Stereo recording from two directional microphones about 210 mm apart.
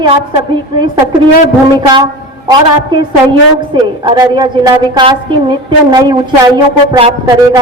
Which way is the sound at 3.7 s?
20° right (ahead or behind).